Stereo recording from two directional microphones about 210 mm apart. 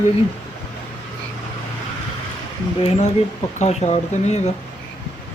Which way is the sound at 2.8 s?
30° left (ahead or behind).